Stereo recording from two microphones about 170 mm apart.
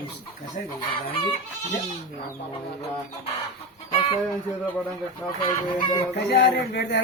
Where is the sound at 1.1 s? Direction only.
35° left (ahead or behind).